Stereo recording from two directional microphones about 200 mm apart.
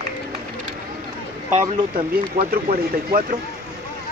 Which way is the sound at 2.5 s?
50° right (ahead or behind).